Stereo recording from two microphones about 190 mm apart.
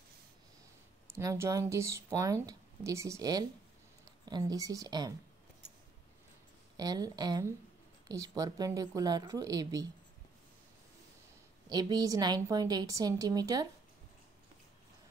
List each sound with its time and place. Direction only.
1.1 s speech: 15° right (ahead or behind)
6.8 s a woman's voice: 20° right (ahead or behind)
11.7 s a woman's voice: 20° right (ahead or behind)